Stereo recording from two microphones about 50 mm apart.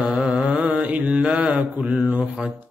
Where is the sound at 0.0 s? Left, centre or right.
Right.